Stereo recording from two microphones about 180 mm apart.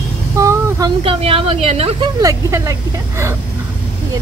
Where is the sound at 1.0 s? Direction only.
30° right (ahead or behind).